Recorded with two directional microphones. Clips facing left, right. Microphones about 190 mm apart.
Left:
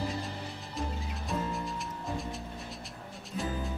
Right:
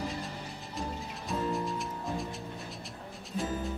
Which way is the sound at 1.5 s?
Centre (ahead or behind).